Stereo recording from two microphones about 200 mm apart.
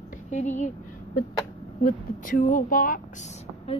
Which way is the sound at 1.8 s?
45° left (ahead or behind).